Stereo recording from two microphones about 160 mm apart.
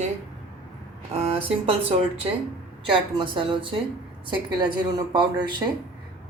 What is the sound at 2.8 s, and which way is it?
A woman's voice, 30° right (ahead or behind).